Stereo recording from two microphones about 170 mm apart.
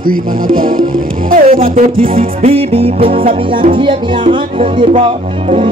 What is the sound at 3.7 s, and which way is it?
Speech, 30° right (ahead or behind).